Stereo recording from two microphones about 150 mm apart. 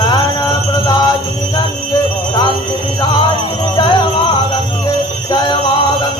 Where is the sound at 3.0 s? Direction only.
30° left (ahead or behind).